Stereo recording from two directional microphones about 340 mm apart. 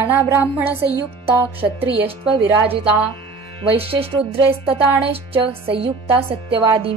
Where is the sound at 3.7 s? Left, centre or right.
Centre.